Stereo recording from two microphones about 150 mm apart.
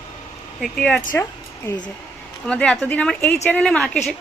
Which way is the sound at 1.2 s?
15° left (ahead or behind).